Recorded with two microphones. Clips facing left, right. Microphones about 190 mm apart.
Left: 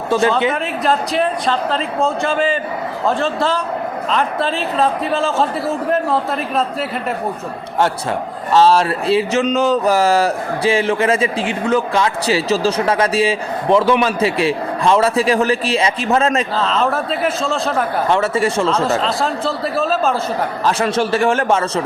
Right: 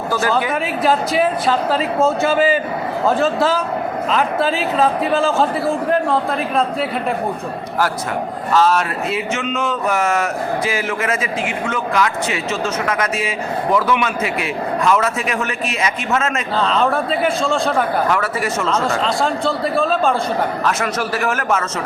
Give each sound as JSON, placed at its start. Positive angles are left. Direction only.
{"t": 0.1, "sound": "a man's voice", "side_deg": 25}
{"t": 0.9, "sound": "a man's voice", "side_deg": -5}
{"t": 8.5, "sound": "speech", "side_deg": 30}
{"t": 16.6, "sound": "a man's voice", "side_deg": 0}
{"t": 18.1, "sound": "speech", "side_deg": 25}
{"t": 18.8, "sound": "a man's voice", "side_deg": 0}
{"t": 20.7, "sound": "a man's voice", "side_deg": 30}